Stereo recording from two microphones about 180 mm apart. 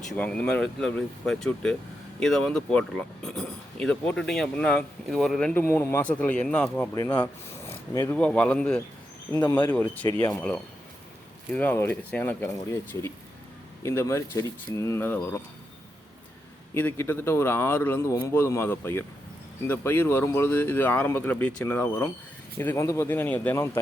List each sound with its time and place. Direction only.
0.1 s speech: 5° left (ahead or behind)
6.9 s speech: 20° left (ahead or behind)
11.5 s speech: 10° left (ahead or behind)
16.7 s speech: 10° left (ahead or behind)